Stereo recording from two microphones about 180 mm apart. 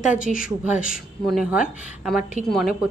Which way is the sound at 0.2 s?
50° left (ahead or behind).